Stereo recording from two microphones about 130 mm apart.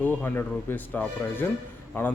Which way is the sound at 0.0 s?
15° left (ahead or behind).